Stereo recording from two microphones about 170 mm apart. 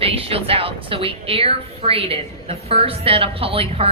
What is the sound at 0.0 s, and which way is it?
A woman's voice, 35° right (ahead or behind).